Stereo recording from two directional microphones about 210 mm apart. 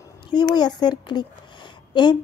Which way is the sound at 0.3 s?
20° left (ahead or behind).